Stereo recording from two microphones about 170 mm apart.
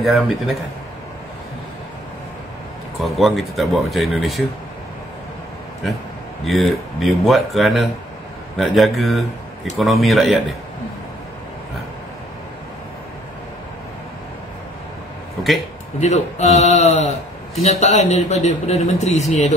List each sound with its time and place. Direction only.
0.0 s speech: centre (ahead or behind)
3.0 s speech: centre (ahead or behind)
6.4 s speech: centre (ahead or behind)
16.0 s a man's voice: 40° left (ahead or behind)